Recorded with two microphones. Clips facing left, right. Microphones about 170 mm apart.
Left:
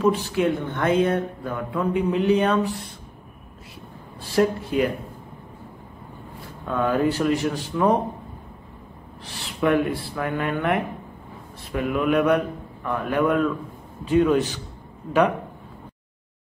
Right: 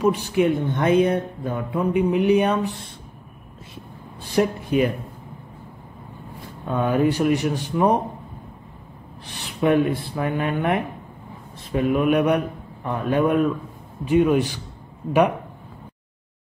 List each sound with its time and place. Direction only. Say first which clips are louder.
0.0 s speech: right 1 dB; 15° right (ahead or behind)
4.3 s speech: even; 20° right (ahead or behind)
6.7 s speech: right 1 dB; 15° right (ahead or behind)
9.2 s speech: right 1 dB; 20° right (ahead or behind)